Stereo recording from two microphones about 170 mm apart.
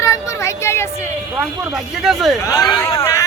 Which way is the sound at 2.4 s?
20° left (ahead or behind).